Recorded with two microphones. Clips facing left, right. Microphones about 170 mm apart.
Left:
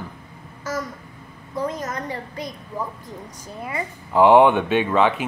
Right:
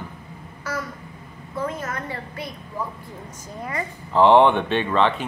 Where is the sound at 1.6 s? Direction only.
15° left (ahead or behind).